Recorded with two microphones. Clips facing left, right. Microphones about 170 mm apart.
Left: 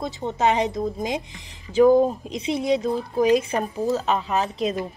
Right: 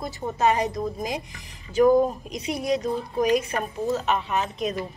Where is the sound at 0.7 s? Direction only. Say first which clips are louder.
Left 2 dB; centre (ahead or behind).